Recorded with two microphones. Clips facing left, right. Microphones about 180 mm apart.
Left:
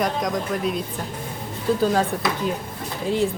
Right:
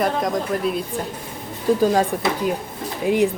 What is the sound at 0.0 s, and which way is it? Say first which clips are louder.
Speech: right 2 dB; centre (ahead or behind).